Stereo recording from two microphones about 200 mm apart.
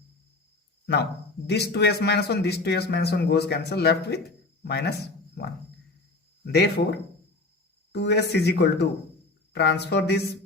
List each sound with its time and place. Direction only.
1.5 s speech: 55° left (ahead or behind)